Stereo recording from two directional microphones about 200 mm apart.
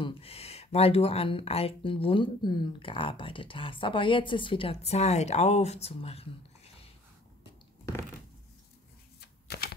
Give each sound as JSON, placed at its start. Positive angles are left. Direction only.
{"t": 0.0, "sound": "speech", "side_deg": 30}
{"t": 9.2, "sound": "shuffling cards", "side_deg": 50}